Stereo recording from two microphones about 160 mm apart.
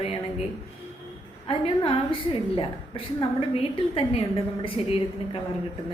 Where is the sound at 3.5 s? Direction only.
35° left (ahead or behind).